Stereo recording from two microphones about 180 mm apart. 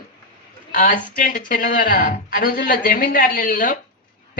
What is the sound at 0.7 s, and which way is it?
Speech, 50° left (ahead or behind).